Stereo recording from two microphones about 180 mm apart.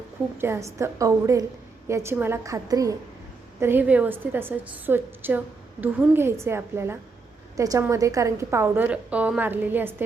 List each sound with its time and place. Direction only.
0.3 s a woman's voice: 15° right (ahead or behind)